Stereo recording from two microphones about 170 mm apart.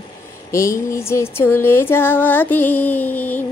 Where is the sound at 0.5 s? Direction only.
15° left (ahead or behind).